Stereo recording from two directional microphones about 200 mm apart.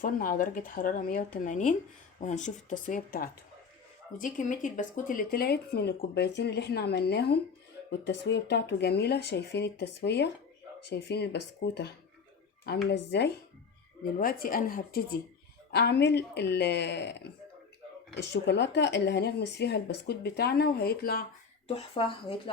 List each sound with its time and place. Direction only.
0.0 s speech: 45° left (ahead or behind)
14.2 s speech: 45° left (ahead or behind)
18.4 s speech: 60° left (ahead or behind)
21.7 s speech: 30° left (ahead or behind)